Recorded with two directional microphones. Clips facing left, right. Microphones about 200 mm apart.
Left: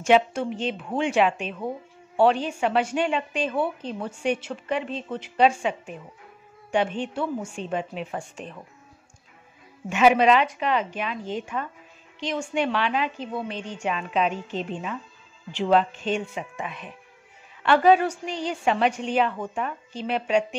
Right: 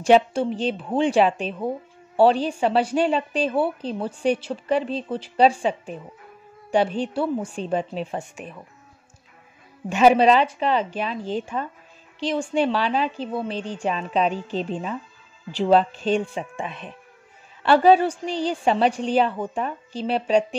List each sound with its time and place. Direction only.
0.0 s a woman's voice: 35° right (ahead or behind)
9.8 s a woman's voice: 35° right (ahead or behind)